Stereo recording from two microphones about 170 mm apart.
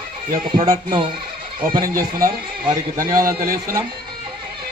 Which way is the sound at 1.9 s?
55° right (ahead or behind).